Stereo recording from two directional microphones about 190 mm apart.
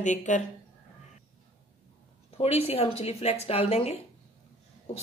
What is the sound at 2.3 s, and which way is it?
Speech, 30° left (ahead or behind).